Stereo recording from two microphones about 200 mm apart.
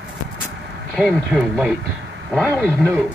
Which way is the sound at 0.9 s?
Centre (ahead or behind).